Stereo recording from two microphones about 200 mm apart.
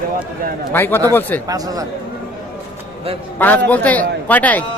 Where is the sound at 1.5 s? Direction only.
20° right (ahead or behind).